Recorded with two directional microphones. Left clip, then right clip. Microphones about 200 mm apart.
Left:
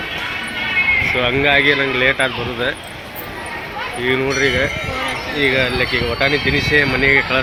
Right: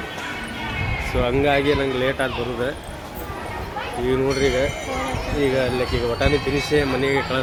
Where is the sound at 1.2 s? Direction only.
Centre (ahead or behind).